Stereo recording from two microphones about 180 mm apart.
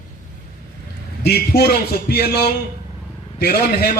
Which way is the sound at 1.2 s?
60° left (ahead or behind).